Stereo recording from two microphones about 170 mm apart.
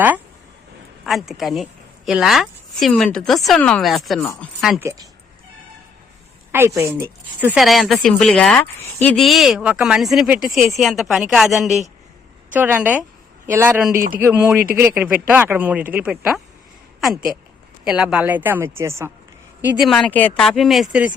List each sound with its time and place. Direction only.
1.0 s speech: centre (ahead or behind)
4.8 s speech: 20° right (ahead or behind)
6.5 s speech: 15° right (ahead or behind)
7.6 s speech: centre (ahead or behind); by 19.1 s 15° right (ahead or behind)
19.6 s speech: 5° right (ahead or behind)